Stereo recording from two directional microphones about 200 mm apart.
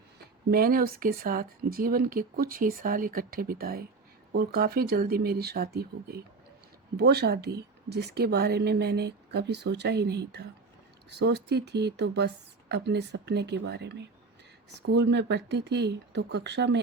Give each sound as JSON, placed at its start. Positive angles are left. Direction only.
{"t": 0.2, "sound": "speech", "side_deg": -50}